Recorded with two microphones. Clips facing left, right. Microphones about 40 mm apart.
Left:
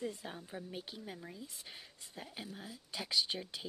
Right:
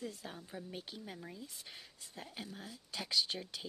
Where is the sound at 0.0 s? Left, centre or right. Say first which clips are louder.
Left 3 dB; centre.